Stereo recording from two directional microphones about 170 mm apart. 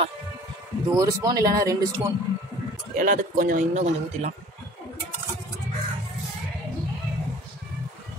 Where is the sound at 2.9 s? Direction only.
55° right (ahead or behind).